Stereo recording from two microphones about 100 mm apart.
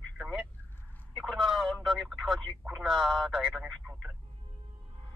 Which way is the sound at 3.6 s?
15° right (ahead or behind).